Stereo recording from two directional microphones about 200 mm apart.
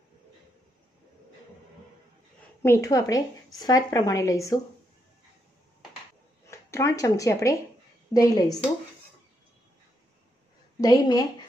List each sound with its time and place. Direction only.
2.6 s speech: 15° left (ahead or behind)
6.4 s a woman's voice: 15° left (ahead or behind)
10.8 s a woman's voice: 20° left (ahead or behind)